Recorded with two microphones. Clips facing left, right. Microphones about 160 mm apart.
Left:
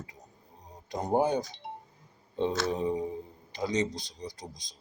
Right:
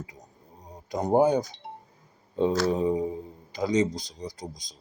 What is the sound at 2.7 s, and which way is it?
Speech, 40° right (ahead or behind).